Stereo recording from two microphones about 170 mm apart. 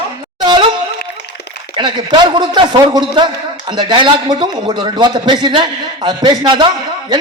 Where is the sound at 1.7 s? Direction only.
25° right (ahead or behind).